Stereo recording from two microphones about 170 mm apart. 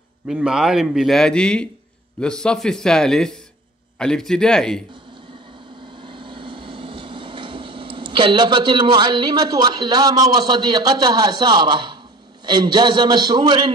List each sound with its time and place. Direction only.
0.3 s a man's voice: 5° right (ahead or behind)
5.9 s vehicle: 30° right (ahead or behind)
12.4 s a man's voice: 25° right (ahead or behind)